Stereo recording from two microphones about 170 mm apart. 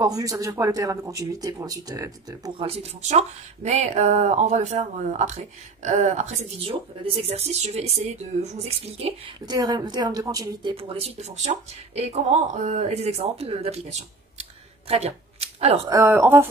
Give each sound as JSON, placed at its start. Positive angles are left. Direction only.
{"t": 0.0, "sound": "speech", "side_deg": -20}
{"t": 2.6, "sound": "speech", "side_deg": -35}
{"t": 9.5, "sound": "speech", "side_deg": -25}
{"t": 15.9, "sound": "speech", "side_deg": -15}